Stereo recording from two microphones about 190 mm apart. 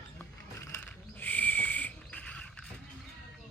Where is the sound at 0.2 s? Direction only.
10° left (ahead or behind).